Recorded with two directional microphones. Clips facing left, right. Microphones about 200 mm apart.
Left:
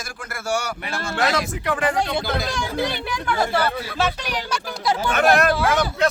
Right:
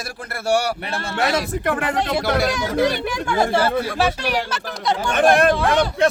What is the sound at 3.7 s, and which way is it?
Speech, 50° right (ahead or behind).